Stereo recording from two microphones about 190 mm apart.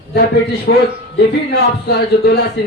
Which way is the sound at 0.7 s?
60° left (ahead or behind).